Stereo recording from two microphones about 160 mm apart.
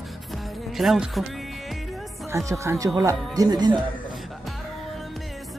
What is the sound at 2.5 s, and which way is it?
Speech, 20° right (ahead or behind).